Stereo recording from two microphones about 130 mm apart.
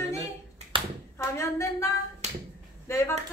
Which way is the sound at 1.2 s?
25° left (ahead or behind).